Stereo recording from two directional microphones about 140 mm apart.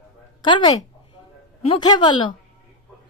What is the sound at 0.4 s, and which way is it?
A woman's voice, 30° left (ahead or behind).